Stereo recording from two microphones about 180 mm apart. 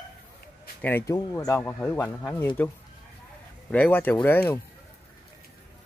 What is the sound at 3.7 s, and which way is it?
Speech, 10° left (ahead or behind).